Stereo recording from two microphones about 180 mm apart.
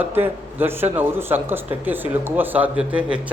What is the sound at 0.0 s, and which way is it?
A man's voice, 10° right (ahead or behind).